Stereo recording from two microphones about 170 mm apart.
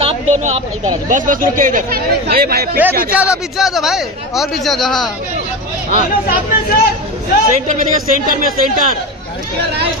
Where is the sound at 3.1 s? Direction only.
10° right (ahead or behind).